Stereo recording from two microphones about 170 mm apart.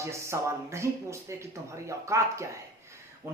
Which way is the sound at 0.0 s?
15° right (ahead or behind).